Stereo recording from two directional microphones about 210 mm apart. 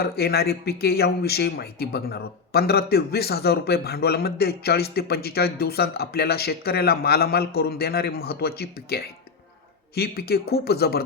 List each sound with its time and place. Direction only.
0.0 s speech: 50° left (ahead or behind)